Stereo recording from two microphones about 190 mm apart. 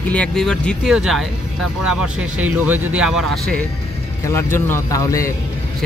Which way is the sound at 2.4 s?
10° right (ahead or behind).